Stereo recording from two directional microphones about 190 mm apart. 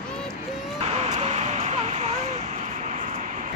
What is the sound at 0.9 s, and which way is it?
Vehicle, 35° right (ahead or behind).